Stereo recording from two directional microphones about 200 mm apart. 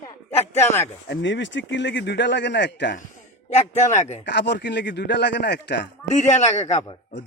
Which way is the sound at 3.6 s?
35° left (ahead or behind).